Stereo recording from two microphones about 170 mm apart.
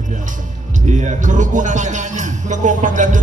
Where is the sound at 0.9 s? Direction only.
45° right (ahead or behind).